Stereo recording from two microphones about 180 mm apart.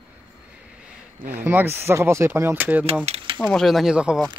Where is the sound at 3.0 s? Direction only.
30° right (ahead or behind).